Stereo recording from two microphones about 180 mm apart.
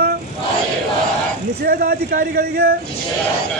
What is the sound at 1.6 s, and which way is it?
Speech, 55° right (ahead or behind).